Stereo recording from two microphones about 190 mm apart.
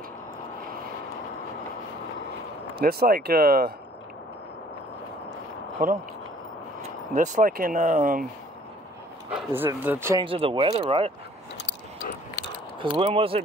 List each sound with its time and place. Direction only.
2.7 s speech: 55° right (ahead or behind)
5.8 s speech: 45° right (ahead or behind)
9.3 s speech: 10° right (ahead or behind)
10.2 s speech: 30° right (ahead or behind)
11.5 s a sound: 60° left (ahead or behind)
12.8 s speech: 30° right (ahead or behind)